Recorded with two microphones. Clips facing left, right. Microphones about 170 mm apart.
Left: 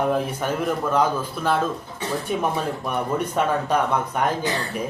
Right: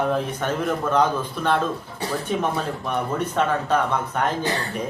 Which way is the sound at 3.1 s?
10° left (ahead or behind).